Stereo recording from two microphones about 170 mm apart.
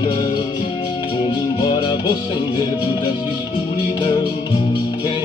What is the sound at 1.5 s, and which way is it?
Music, 25° left (ahead or behind).